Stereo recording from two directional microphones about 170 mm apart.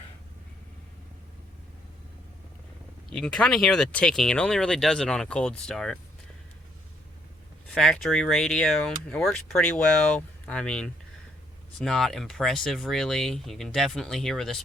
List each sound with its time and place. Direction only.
3.1 s speech: 5° left (ahead or behind)
7.7 s speech: centre (ahead or behind)